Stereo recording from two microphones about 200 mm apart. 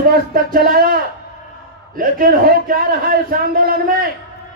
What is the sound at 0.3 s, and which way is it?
Speech, 45° right (ahead or behind).